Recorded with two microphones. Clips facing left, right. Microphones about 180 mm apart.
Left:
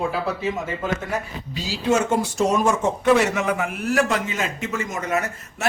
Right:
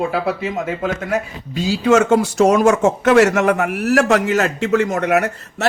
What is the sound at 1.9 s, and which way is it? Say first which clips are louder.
Speech: right 6 dB; 90° right.